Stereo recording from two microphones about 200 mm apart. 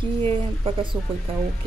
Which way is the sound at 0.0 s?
25° right (ahead or behind).